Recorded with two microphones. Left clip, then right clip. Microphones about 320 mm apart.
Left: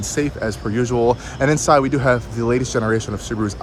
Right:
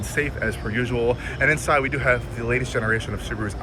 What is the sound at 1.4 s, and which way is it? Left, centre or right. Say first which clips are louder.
Speech: left 5 dB; centre.